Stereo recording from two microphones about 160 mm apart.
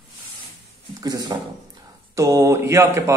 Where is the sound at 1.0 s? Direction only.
25° right (ahead or behind).